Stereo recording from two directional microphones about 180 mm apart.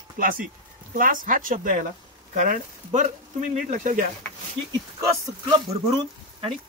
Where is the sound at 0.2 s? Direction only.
55° right (ahead or behind).